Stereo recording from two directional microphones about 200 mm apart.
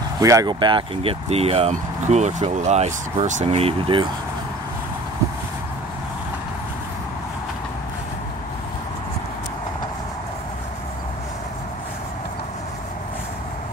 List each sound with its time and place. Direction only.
0.2 s speech: 15° right (ahead or behind)